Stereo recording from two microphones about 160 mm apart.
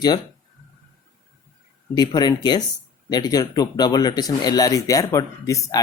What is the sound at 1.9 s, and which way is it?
Speech, 25° left (ahead or behind).